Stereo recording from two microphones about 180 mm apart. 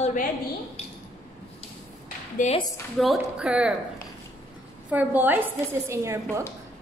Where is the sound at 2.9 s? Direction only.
Centre (ahead or behind).